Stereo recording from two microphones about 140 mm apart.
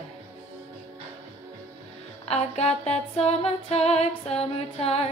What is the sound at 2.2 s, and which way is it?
Female singing, 50° left (ahead or behind).